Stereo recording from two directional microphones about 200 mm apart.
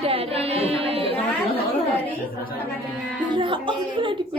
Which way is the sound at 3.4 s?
25° right (ahead or behind).